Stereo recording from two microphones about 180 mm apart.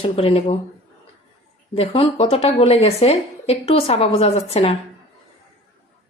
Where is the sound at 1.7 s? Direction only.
30° left (ahead or behind).